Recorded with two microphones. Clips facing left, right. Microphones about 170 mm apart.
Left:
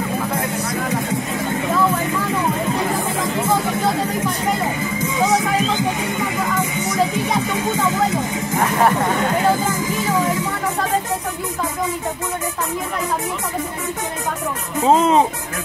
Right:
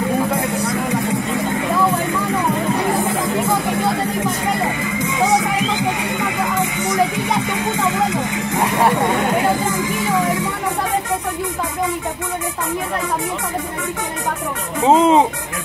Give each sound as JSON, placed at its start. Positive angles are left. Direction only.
{"t": 14.8, "sound": "speech", "side_deg": -20}